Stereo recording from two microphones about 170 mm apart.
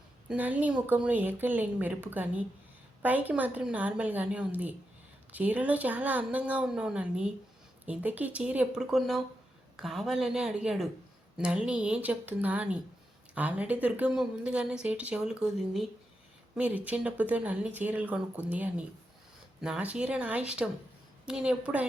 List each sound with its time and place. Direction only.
0.3 s speech: 10° right (ahead or behind)